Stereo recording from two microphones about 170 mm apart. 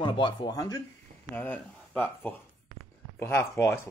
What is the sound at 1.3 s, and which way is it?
Speech, 10° left (ahead or behind).